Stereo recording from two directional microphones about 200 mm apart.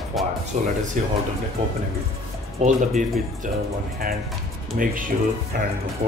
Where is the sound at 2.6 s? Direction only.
40° right (ahead or behind).